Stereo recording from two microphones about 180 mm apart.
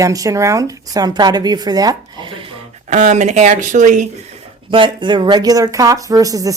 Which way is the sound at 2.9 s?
40° right (ahead or behind).